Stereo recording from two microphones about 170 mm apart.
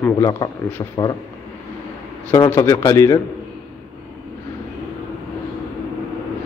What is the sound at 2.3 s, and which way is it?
Speech, 15° left (ahead or behind).